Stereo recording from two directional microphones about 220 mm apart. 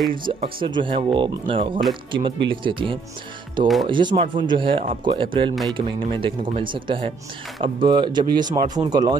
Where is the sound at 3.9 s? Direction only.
20° right (ahead or behind).